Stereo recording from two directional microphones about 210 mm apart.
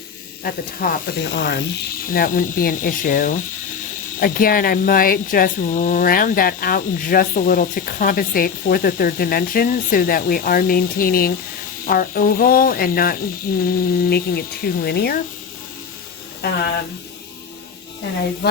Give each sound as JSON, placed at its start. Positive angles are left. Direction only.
{"t": 0.4, "sound": "speech", "side_deg": 45}
{"t": 16.4, "sound": "speech", "side_deg": 50}